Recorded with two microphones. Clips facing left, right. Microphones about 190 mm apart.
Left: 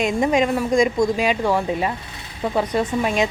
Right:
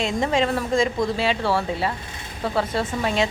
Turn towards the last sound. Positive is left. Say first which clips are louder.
# left 3 dB
turn(degrees=15)  # may be behind; listen again after turning